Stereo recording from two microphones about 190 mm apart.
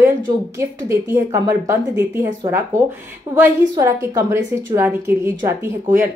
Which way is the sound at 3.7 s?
20° right (ahead or behind).